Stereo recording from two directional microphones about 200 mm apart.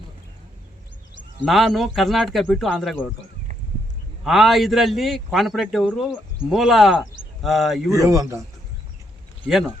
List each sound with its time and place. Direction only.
1.4 s a man's voice: centre (ahead or behind)
4.2 s a man's voice: centre (ahead or behind)
7.9 s speech: 15° right (ahead or behind)
9.5 s a man's voice: centre (ahead or behind)